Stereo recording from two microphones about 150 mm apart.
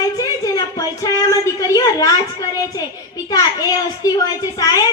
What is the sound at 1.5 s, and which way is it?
A child's voice, 25° left (ahead or behind).